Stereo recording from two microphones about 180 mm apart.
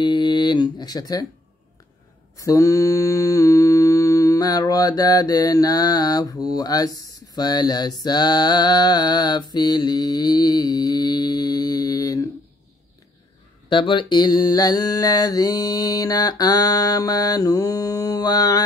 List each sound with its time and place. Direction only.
0.0 s a sound: 25° left (ahead or behind)
2.3 s mantra: 20° left (ahead or behind)
13.7 s mantra: 25° left (ahead or behind)